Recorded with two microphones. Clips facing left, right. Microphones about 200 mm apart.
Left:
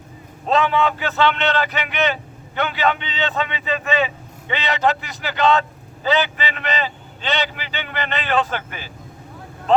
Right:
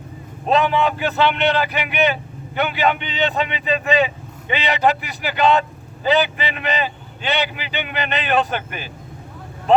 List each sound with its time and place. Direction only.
0.4 s speech: 15° right (ahead or behind)